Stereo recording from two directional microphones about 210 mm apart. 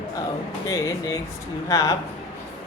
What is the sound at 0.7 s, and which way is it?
A man's voice, 15° left (ahead or behind).